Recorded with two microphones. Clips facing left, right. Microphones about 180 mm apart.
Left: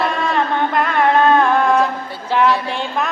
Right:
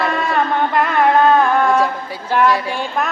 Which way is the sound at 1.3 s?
Centre (ahead or behind).